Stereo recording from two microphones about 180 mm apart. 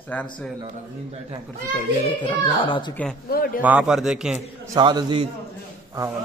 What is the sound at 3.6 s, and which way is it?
Speech, 5° right (ahead or behind).